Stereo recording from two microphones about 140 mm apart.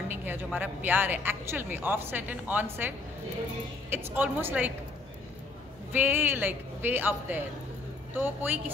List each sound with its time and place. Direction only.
0.1 s speech: 15° right (ahead or behind)
3.9 s speech: 15° right (ahead or behind)
5.9 s speech: 15° right (ahead or behind)